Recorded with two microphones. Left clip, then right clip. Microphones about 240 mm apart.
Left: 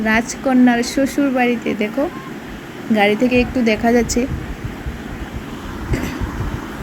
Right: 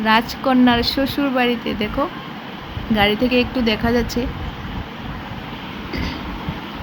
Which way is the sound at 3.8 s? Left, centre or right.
Centre.